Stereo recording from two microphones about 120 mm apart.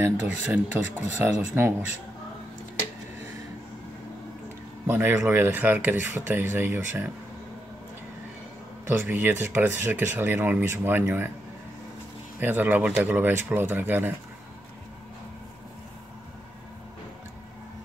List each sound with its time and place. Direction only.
0.0 s speech: 15° right (ahead or behind)
4.8 s speech: 20° right (ahead or behind)
9.0 s speech: 15° right (ahead or behind)
12.4 s speech: 15° right (ahead or behind)